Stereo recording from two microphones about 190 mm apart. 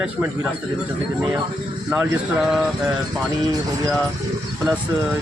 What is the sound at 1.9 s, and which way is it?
Speech, 5° right (ahead or behind).